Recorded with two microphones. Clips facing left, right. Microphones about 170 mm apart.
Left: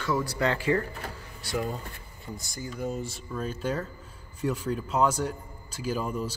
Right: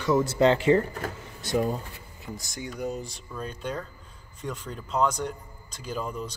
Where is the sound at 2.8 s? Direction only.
Centre (ahead or behind).